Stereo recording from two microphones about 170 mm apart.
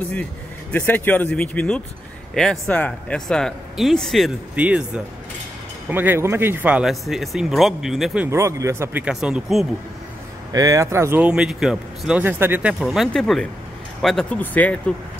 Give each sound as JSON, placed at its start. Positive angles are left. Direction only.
{"t": 0.7, "sound": "speech", "side_deg": 10}
{"t": 10.5, "sound": "speech", "side_deg": -20}